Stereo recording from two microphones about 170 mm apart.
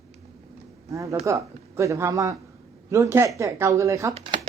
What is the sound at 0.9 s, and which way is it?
Speech, 20° right (ahead or behind).